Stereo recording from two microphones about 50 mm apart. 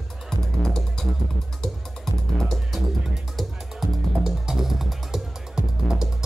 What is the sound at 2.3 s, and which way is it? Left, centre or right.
Music, centre.